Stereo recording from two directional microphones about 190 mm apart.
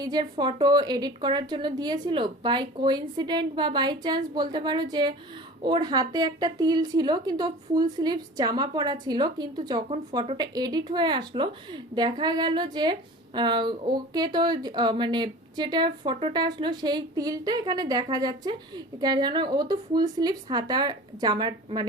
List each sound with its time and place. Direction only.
0.0 s speech: 20° right (ahead or behind)